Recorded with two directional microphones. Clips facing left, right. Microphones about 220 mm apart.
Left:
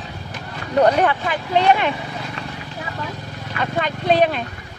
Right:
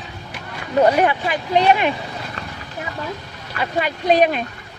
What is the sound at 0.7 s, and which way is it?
Speech, 10° right (ahead or behind).